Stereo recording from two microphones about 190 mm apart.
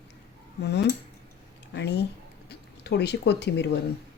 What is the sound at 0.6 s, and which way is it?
Speech, 60° left (ahead or behind).